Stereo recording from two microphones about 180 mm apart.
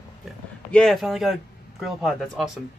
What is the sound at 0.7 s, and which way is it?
Speech, centre (ahead or behind).